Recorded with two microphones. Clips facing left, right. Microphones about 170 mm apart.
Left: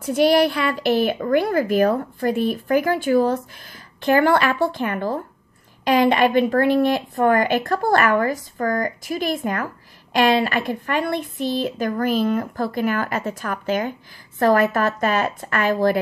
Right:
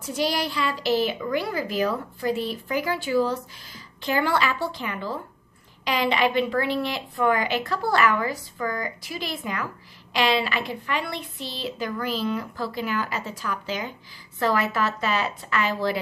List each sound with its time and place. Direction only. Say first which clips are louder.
0.0 s a woman's voice: left 10 dB; 55° left (ahead or behind)